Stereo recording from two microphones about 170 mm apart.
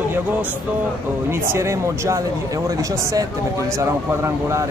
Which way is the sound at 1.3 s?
15° right (ahead or behind).